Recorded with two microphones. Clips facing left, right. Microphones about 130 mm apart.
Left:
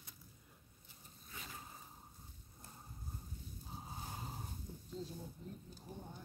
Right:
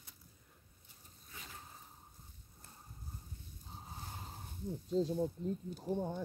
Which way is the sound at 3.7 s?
5° left (ahead or behind).